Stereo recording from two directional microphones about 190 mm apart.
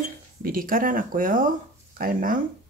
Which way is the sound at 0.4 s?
50° right (ahead or behind).